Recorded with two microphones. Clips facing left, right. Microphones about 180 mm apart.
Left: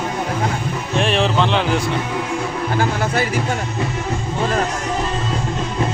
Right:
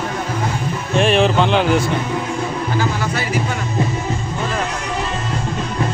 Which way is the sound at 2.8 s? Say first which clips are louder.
Left 4 dB; 55° left (ahead or behind).